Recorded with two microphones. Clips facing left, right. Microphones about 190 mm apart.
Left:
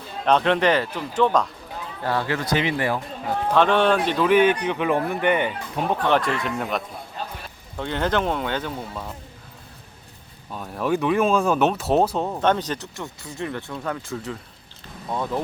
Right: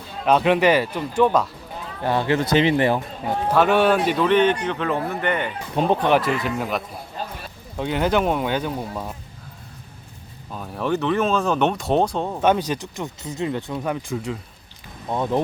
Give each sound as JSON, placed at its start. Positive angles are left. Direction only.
{"t": 0.3, "sound": "speech", "side_deg": -10}
{"t": 2.0, "sound": "speech", "side_deg": -20}
{"t": 3.5, "sound": "speech", "side_deg": -5}
{"t": 4.2, "sound": "speech", "side_deg": 10}
{"t": 5.7, "sound": "speech", "side_deg": -25}
{"t": 6.1, "sound": "speech", "side_deg": -5}
{"t": 10.5, "sound": "speech", "side_deg": 0}
{"t": 12.4, "sound": "speech", "side_deg": -10}